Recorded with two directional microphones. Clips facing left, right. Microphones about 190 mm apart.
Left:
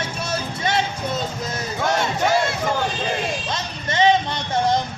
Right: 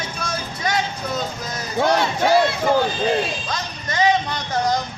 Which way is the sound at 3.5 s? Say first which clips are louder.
Left 1 dB; 25° left (ahead or behind).